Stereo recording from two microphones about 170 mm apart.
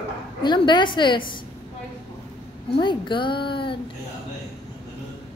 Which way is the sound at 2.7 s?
30° left (ahead or behind).